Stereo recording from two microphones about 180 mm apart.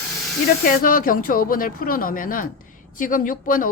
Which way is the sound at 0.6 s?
50° left (ahead or behind).